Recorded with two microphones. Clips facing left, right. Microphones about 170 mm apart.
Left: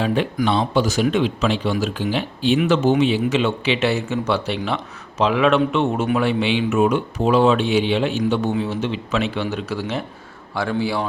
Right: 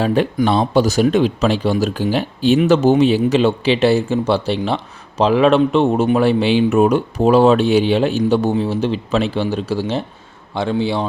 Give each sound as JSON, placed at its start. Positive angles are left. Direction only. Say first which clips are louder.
{"t": 0.0, "sound": "speech", "louder": "right 4 dB", "side_deg": -40}